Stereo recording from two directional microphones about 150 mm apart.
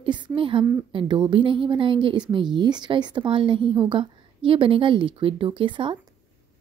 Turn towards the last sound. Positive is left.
turn(degrees=-35)  # may be behind; listen again after turning